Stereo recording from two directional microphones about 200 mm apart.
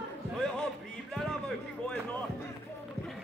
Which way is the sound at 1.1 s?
5° left (ahead or behind).